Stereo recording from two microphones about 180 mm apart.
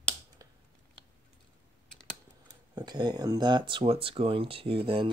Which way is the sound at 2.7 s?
25° right (ahead or behind).